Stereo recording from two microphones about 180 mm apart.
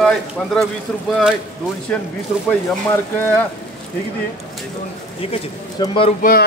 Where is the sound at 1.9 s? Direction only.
5° left (ahead or behind).